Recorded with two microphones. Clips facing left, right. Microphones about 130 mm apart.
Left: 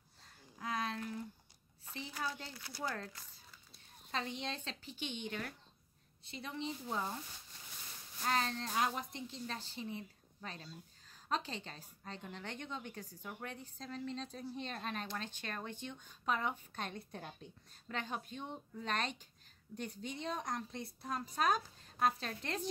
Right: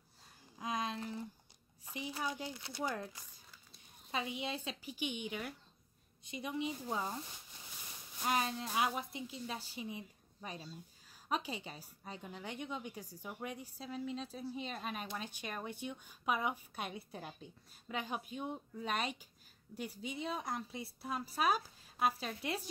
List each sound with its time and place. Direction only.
0.6 s a sound: 20° right (ahead or behind)
1.9 s a woman's voice: 15° right (ahead or behind)
8.2 s a woman's voice: 10° right (ahead or behind)